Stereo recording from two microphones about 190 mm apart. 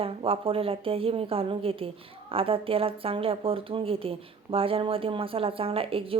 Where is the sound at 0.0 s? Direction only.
30° right (ahead or behind).